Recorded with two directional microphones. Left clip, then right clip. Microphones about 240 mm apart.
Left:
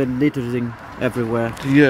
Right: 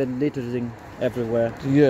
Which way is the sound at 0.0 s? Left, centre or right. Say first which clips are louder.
Left 5 dB; left.